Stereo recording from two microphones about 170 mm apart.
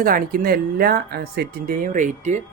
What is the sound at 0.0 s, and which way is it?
Speech, 55° right (ahead or behind).